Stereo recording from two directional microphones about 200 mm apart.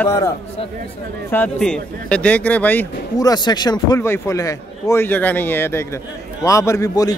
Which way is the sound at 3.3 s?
20° left (ahead or behind).